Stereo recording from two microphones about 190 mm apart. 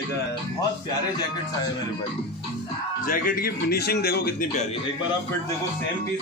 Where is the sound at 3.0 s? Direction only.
50° left (ahead or behind).